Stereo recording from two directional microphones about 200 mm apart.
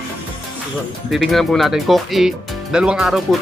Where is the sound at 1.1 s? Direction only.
Centre (ahead or behind).